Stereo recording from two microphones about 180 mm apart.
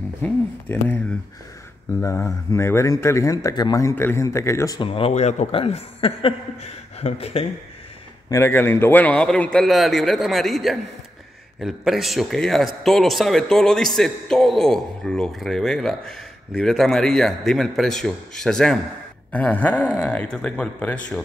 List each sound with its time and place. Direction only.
0.2 s speech: 10° left (ahead or behind)
2.0 s speech: 15° left (ahead or behind)
4.8 s speech: 30° left (ahead or behind)
8.3 s speech: 15° left (ahead or behind)